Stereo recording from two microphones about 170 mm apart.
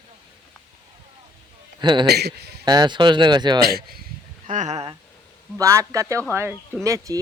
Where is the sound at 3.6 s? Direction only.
65° right (ahead or behind).